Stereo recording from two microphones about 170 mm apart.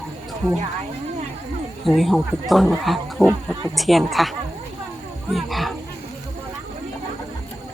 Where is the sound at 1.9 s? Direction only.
Centre (ahead or behind).